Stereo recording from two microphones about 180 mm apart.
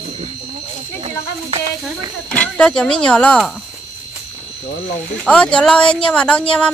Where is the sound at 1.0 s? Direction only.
35° right (ahead or behind).